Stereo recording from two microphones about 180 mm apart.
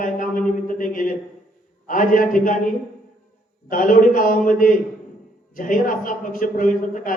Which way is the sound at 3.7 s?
50° left (ahead or behind).